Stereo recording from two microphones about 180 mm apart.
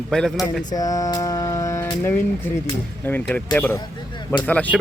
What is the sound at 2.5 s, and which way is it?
Speech, 10° left (ahead or behind).